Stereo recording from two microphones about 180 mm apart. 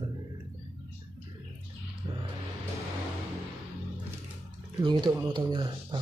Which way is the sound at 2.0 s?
25° right (ahead or behind).